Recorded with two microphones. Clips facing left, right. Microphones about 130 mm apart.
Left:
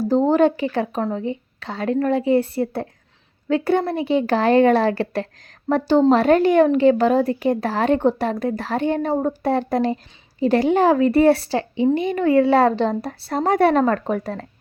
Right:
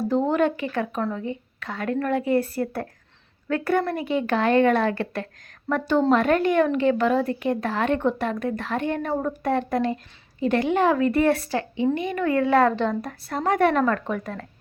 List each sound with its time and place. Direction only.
0.0 s a woman's voice: 35° left (ahead or behind)